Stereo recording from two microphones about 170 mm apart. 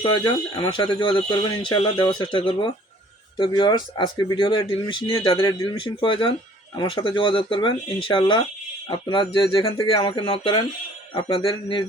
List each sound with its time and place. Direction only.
0.0 s speech: 25° left (ahead or behind)